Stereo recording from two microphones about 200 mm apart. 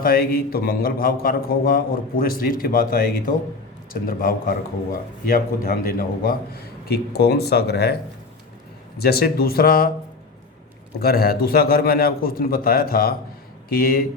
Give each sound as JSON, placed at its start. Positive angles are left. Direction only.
{"t": 0.0, "sound": "speech", "side_deg": 45}
{"t": 9.0, "sound": "speech", "side_deg": 50}
{"t": 11.0, "sound": "speech", "side_deg": 50}